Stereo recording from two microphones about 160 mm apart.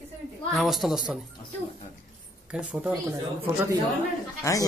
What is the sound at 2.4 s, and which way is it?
Speech, 5° right (ahead or behind).